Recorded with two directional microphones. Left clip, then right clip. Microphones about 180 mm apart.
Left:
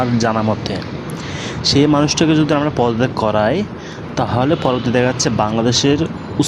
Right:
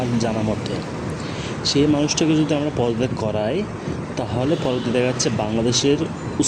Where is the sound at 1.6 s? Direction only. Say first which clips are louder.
Left 5 dB; 40° left (ahead or behind).